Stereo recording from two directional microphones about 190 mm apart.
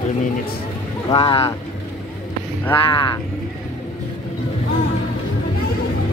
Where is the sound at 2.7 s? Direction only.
25° left (ahead or behind).